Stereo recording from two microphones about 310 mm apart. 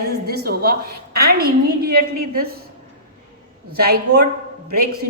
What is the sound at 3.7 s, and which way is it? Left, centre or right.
A woman's voice, right.